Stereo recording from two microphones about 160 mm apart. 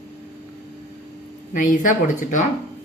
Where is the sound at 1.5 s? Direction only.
55° left (ahead or behind).